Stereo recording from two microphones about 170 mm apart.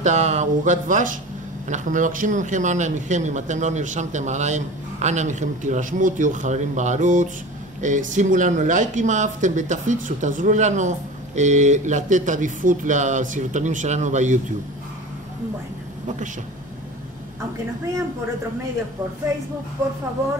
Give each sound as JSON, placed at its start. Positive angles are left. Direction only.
{"t": 0.0, "sound": "speech", "side_deg": -45}